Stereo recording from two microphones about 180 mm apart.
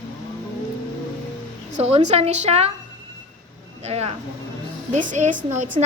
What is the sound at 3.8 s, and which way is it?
A woman's voice, 35° right (ahead or behind).